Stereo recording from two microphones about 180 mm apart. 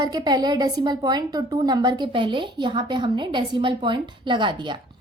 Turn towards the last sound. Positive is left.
turn(degrees=-25)  # may be behind; listen again after turning